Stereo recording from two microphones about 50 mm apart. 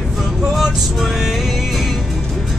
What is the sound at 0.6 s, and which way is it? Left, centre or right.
Vehicle, centre.